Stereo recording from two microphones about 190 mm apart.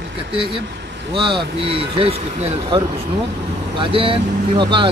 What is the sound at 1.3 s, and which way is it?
Speech, 55° right (ahead or behind).